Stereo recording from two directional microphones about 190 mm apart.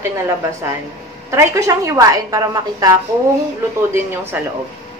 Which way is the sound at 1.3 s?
15° right (ahead or behind).